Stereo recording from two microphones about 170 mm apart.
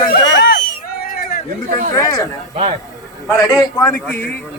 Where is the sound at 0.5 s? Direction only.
60° left (ahead or behind).